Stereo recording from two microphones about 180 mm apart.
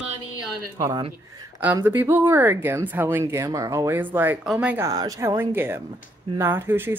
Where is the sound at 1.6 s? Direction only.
10° right (ahead or behind).